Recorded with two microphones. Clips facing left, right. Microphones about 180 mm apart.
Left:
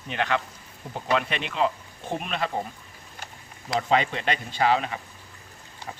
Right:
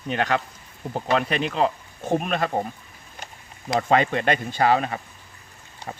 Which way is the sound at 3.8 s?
50° right (ahead or behind).